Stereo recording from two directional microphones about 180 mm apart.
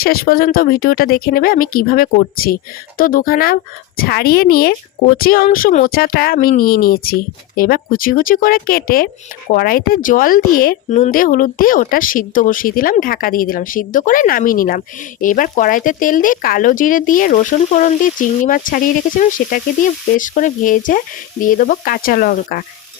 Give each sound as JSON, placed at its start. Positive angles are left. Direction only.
{"t": 0.0, "sound": "speech", "side_deg": 55}
{"t": 10.8, "sound": "speech", "side_deg": 40}